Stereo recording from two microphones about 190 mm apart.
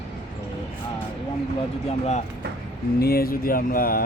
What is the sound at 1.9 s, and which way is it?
Speech, 35° left (ahead or behind).